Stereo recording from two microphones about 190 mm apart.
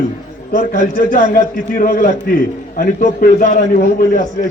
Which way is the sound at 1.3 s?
50° left (ahead or behind).